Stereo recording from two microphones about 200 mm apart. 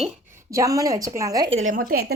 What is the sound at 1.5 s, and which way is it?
Speech, 40° right (ahead or behind).